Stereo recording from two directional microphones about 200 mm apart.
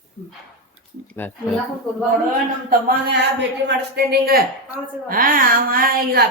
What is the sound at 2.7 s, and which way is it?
A woman's voice, 50° right (ahead or behind).